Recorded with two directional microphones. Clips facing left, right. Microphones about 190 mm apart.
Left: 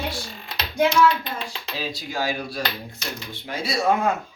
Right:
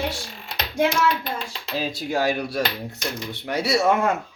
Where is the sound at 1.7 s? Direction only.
60° right (ahead or behind).